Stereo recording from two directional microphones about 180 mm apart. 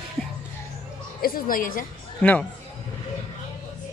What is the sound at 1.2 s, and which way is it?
Speech, 50° left (ahead or behind).